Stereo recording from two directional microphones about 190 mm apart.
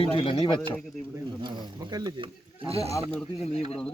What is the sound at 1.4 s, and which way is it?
Speech, 20° right (ahead or behind).